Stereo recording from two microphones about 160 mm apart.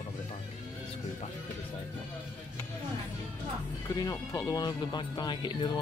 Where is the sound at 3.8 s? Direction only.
20° left (ahead or behind).